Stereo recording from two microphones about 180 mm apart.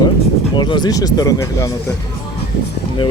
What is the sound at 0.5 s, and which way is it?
Speech, 25° left (ahead or behind).